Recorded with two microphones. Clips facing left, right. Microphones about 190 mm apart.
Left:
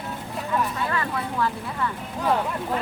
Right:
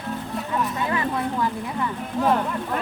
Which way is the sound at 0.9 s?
15° right (ahead or behind).